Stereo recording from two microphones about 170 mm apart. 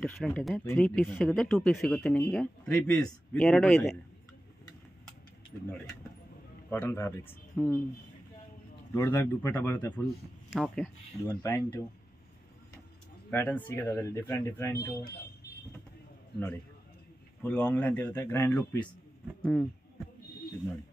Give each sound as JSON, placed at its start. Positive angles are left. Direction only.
{"t": 0.0, "sound": "speech", "side_deg": 5}
{"t": 6.7, "sound": "speech", "side_deg": 10}
{"t": 8.9, "sound": "speech", "side_deg": 15}
{"t": 10.5, "sound": "speech", "side_deg": 0}
{"t": 11.2, "sound": "speech", "side_deg": 15}
{"t": 13.3, "sound": "speech", "side_deg": 10}
{"t": 17.4, "sound": "speech", "side_deg": 10}